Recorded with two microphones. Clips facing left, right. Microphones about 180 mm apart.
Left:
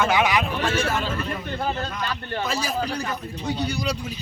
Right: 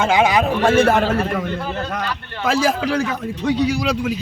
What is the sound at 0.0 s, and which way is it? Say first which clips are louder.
Speech: right 5 dB; 25° right (ahead or behind).